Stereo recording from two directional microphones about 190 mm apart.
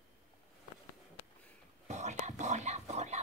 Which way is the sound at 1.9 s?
40° right (ahead or behind).